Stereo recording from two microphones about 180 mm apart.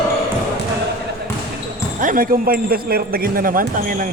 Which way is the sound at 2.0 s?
50° right (ahead or behind).